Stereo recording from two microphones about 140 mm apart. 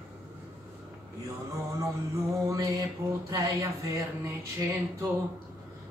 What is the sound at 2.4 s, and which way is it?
Female singing, 25° right (ahead or behind).